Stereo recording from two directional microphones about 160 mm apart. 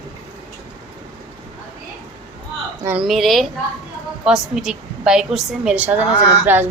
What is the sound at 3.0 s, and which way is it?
A woman's voice, centre (ahead or behind).